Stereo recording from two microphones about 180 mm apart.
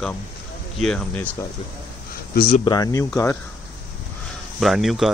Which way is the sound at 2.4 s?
55° left (ahead or behind).